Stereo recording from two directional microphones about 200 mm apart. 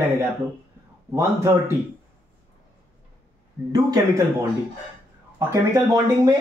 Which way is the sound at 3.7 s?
20° right (ahead or behind).